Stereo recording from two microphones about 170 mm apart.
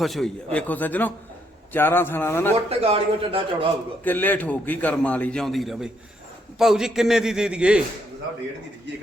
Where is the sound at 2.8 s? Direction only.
35° right (ahead or behind).